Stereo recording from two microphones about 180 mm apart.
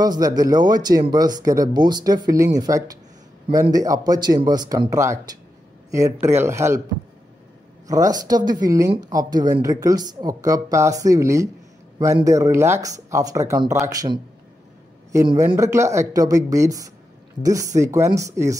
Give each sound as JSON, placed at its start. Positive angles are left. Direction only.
{"t": 0.0, "sound": "speech", "side_deg": -20}
{"t": 7.9, "sound": "speech", "side_deg": -20}